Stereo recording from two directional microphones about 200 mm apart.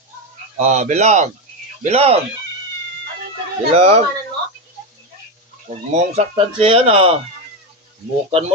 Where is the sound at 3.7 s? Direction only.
30° right (ahead or behind).